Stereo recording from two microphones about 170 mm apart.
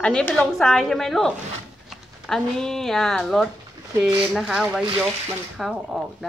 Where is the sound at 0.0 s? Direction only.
5° left (ahead or behind).